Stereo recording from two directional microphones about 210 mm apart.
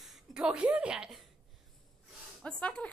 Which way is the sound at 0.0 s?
Centre (ahead or behind).